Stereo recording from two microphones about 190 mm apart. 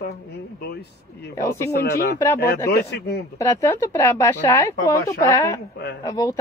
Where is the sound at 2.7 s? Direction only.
55° left (ahead or behind).